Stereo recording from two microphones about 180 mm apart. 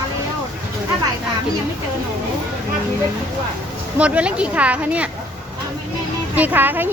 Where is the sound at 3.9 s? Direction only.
5° right (ahead or behind).